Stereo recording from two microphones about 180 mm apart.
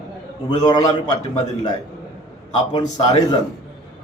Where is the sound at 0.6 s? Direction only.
20° left (ahead or behind).